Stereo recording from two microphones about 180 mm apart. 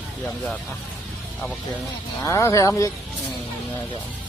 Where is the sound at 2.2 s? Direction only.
15° left (ahead or behind).